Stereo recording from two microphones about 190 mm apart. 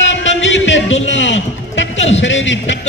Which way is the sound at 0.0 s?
75° left (ahead or behind).